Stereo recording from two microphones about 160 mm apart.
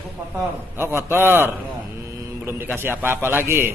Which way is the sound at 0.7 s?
15° right (ahead or behind).